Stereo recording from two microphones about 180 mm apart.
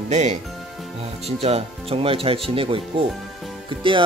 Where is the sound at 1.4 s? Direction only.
35° right (ahead or behind).